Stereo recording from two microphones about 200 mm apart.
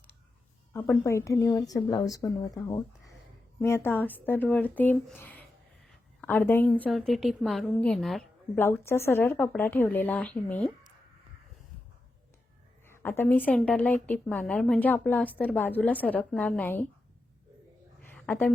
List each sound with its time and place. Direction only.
0.7 s a woman's voice: 10° left (ahead or behind)
3.6 s a woman's voice: 10° left (ahead or behind)
8.5 s a woman's voice: 10° left (ahead or behind)
12.9 s a woman's voice: 10° left (ahead or behind)
18.3 s a woman's voice: 5° left (ahead or behind)